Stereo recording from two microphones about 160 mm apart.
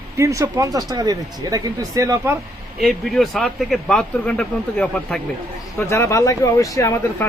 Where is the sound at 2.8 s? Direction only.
Centre (ahead or behind).